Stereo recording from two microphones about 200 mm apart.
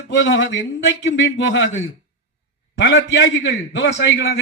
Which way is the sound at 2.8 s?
65° left (ahead or behind).